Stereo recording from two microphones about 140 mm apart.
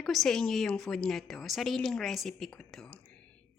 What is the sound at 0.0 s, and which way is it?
A woman's voice, centre (ahead or behind).